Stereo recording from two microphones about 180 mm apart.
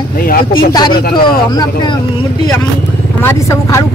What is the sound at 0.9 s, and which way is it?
Speech, 55° left (ahead or behind).